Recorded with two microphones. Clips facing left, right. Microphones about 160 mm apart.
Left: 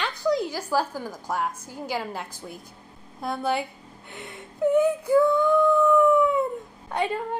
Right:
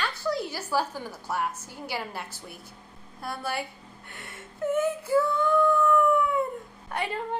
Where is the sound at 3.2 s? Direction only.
20° left (ahead or behind).